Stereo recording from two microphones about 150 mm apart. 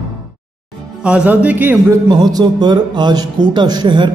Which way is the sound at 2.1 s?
25° right (ahead or behind).